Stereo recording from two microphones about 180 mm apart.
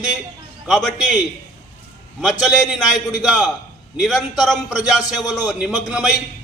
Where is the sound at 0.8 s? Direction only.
Centre (ahead or behind).